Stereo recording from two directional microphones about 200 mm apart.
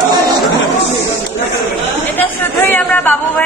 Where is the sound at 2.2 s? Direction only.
10° left (ahead or behind).